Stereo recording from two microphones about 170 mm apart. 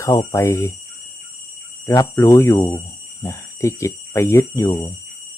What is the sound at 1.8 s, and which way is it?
Speech, 15° left (ahead or behind).